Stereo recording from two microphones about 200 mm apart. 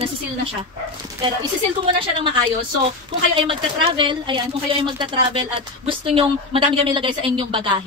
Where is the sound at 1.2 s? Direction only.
25° right (ahead or behind).